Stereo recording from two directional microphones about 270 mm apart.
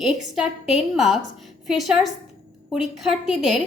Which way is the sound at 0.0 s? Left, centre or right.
Centre.